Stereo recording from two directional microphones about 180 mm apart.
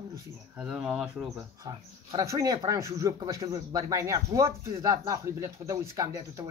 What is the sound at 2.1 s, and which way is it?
Speech, 20° right (ahead or behind).